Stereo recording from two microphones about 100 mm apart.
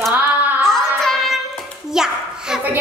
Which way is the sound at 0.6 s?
5° left (ahead or behind).